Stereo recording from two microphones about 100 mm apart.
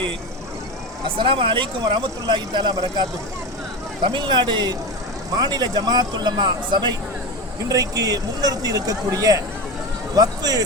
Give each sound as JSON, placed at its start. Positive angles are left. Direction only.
{"t": 1.0, "sound": "speech", "side_deg": -60}
{"t": 4.0, "sound": "speech", "side_deg": -55}